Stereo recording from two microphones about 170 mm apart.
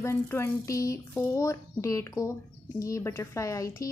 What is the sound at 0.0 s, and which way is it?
A woman's voice, 15° left (ahead or behind).